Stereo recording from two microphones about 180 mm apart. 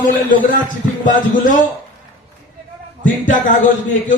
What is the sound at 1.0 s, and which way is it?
Speech, 45° left (ahead or behind).